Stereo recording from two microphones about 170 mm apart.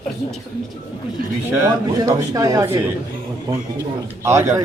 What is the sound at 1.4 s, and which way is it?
Speech, 15° right (ahead or behind).